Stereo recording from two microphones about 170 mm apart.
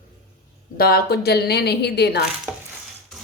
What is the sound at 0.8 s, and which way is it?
A woman's voice, 65° left (ahead or behind).